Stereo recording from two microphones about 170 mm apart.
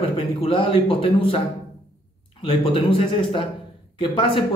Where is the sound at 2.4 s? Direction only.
30° left (ahead or behind).